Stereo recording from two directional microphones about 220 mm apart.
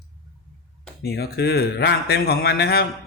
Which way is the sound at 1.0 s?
45° left (ahead or behind).